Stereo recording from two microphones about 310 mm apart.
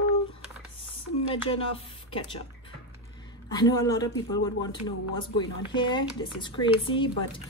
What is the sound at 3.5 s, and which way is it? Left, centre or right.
Speech, centre.